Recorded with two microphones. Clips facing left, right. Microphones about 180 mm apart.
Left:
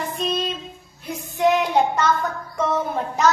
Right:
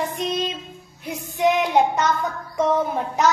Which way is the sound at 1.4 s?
15° right (ahead or behind).